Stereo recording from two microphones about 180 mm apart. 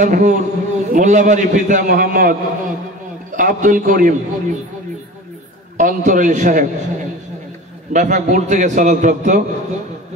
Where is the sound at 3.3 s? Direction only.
50° right (ahead or behind).